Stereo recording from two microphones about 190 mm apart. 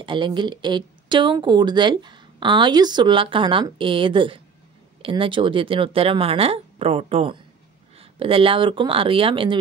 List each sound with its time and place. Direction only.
0.0 s speech: 25° right (ahead or behind)